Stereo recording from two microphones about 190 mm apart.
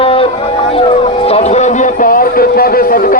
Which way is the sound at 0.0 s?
30° left (ahead or behind).